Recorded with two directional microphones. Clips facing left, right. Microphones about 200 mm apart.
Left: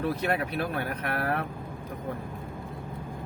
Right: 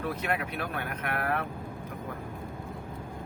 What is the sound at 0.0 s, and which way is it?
Speech, 35° left (ahead or behind).